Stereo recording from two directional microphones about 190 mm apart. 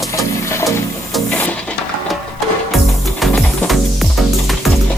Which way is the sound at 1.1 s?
10° left (ahead or behind).